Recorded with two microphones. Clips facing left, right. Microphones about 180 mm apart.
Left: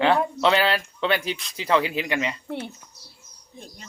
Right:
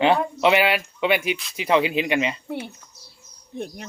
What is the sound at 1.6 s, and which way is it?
Speech, 20° right (ahead or behind).